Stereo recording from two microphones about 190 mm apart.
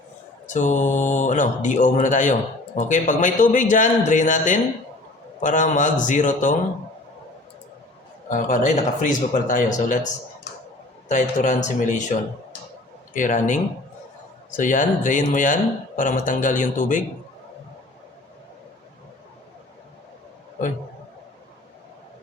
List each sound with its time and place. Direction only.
0.4 s speech: 40° left (ahead or behind)
8.3 s speech: 40° left (ahead or behind)
11.1 s speech: 40° left (ahead or behind)
13.1 s speech: 40° left (ahead or behind)